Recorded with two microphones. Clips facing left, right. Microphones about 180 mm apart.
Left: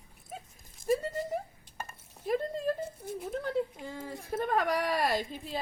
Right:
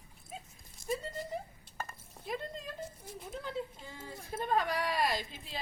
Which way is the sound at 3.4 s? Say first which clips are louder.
Left 7 dB; 60° left (ahead or behind).